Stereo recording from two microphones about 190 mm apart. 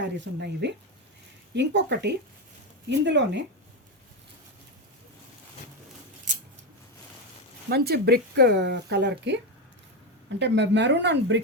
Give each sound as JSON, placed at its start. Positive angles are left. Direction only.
{"t": 0.0, "sound": "speech", "side_deg": -65}
{"t": 7.7, "sound": "speech", "side_deg": -60}